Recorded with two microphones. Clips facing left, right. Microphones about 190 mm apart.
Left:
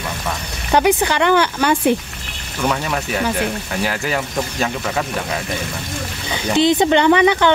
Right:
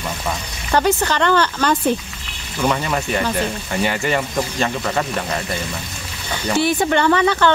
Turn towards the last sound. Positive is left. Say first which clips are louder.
# left 3 dB
turn(degrees=15)  # may be behind; listen again after turning